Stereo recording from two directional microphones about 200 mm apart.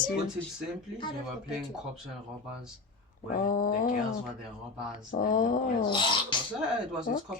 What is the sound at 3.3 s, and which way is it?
Speech, 45° left (ahead or behind).